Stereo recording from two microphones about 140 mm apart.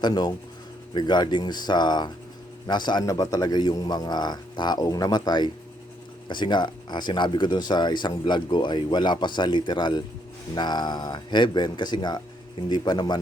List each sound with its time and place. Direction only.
0.0 s a man's voice: 30° left (ahead or behind)